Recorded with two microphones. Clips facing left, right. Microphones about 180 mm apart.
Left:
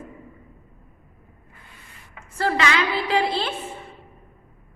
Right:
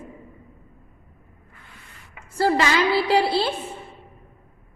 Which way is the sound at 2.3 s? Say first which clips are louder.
Right 3 dB; 35° right (ahead or behind).